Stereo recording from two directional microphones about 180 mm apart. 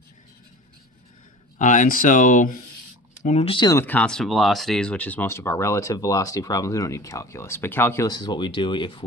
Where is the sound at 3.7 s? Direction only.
10° left (ahead or behind).